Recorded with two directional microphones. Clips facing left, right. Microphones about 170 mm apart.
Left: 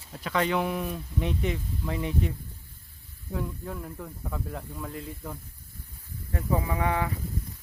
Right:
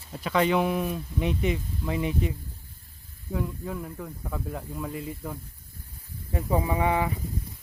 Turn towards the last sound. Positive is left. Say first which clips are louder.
# right 3 dB
turn(degrees=-15)  # may be behind; listen again after turning